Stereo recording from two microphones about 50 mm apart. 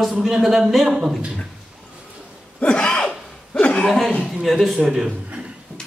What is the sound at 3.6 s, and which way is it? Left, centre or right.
Speech, centre.